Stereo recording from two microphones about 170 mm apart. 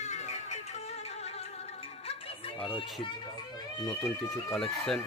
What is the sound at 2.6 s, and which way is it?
Music, 30° left (ahead or behind).